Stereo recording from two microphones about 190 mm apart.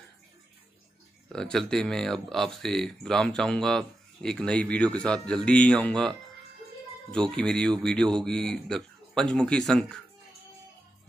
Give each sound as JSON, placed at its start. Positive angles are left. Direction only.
{"t": 1.3, "sound": "speech", "side_deg": 5}